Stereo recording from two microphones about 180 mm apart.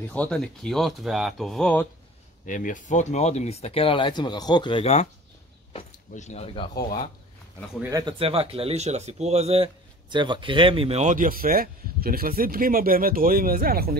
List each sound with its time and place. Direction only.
0.1 s speech: 5° left (ahead or behind)
2.4 s speech: 45° left (ahead or behind)
6.7 s speech: 55° left (ahead or behind)
7.9 s speech: 30° right (ahead or behind); by 13.9 s 55° right (ahead or behind)